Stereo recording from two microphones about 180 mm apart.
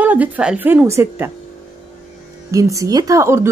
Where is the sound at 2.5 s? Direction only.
20° right (ahead or behind).